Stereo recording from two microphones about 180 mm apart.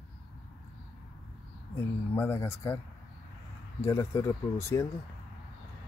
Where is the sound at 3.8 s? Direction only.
15° left (ahead or behind).